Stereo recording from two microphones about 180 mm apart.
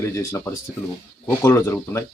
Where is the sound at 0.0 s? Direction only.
15° left (ahead or behind).